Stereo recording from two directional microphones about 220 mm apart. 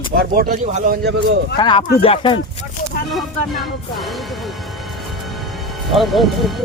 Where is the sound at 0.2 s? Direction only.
45° right (ahead or behind).